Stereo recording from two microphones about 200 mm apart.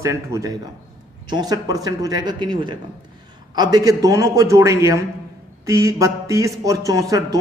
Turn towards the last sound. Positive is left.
turn(degrees=-15)  # may be behind; listen again after turning